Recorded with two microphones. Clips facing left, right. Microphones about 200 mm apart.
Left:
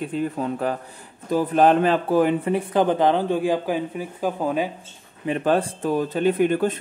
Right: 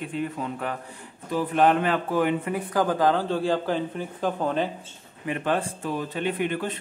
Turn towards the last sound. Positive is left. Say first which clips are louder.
# left 8 dB
turn(degrees=45)  # may be behind; listen again after turning